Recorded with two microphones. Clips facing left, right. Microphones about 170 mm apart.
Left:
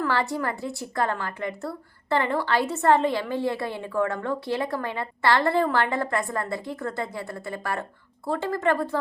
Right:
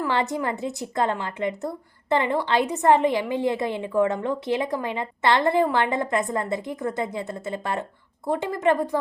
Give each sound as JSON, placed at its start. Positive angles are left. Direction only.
{"t": 0.0, "sound": "a woman's voice", "side_deg": -20}